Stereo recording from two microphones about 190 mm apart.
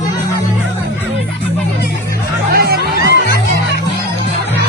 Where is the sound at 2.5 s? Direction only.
55° right (ahead or behind).